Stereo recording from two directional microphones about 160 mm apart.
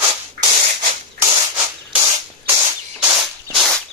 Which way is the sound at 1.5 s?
10° right (ahead or behind).